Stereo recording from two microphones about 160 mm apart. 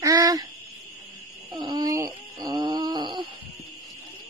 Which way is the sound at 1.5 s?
25° right (ahead or behind).